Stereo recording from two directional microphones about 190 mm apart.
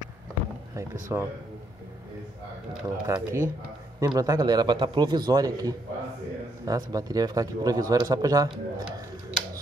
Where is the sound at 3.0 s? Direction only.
15° right (ahead or behind).